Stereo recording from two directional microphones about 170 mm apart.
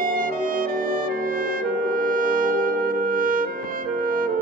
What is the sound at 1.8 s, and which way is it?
Brass instrument, 55° right (ahead or behind).